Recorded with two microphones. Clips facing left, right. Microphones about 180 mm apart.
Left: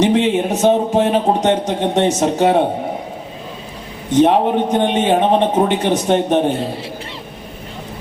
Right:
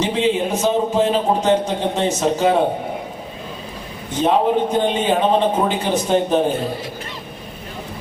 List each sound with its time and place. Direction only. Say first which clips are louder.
0.0 s speech: left 4 dB; 70° left (ahead or behind)
4.2 s speech: left 3 dB; 65° left (ahead or behind)